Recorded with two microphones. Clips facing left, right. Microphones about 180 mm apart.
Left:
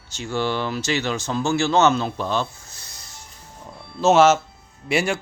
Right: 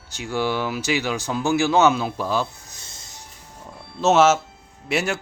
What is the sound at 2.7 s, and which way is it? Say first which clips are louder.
Music: even; 20° right (ahead or behind).